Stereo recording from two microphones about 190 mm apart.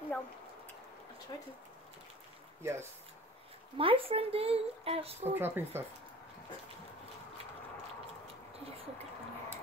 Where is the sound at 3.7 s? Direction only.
30° right (ahead or behind).